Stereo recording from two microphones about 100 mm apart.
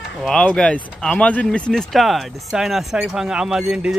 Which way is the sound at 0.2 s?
10° left (ahead or behind).